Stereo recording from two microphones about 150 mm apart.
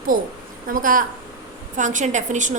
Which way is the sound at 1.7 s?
55° right (ahead or behind).